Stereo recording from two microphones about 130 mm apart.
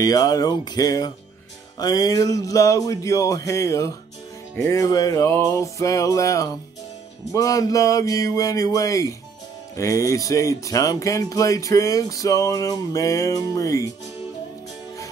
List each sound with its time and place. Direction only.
0.0 s speech: 25° left (ahead or behind)